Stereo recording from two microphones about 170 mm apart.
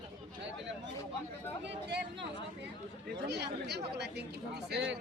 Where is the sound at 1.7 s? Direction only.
90° right.